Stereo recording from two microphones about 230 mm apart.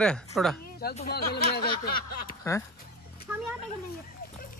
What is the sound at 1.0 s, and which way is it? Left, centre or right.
Speech, left.